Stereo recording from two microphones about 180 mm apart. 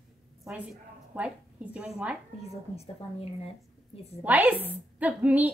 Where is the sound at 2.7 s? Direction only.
35° left (ahead or behind).